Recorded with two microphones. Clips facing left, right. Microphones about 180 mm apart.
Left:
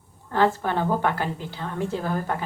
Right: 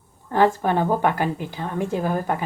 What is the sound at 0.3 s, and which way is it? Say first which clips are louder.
A woman's voice: right 3 dB; 15° right (ahead or behind).